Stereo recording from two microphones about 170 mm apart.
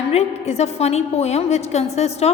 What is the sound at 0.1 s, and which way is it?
A woman's voice, 40° left (ahead or behind).